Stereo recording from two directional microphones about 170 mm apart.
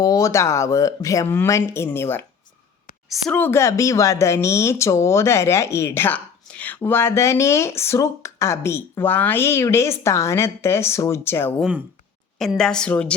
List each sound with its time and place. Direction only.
0.0 s speech: 20° left (ahead or behind)
12.4 s a woman's voice: centre (ahead or behind)